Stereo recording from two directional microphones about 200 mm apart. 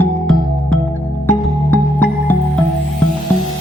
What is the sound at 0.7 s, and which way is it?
Music, 5° left (ahead or behind).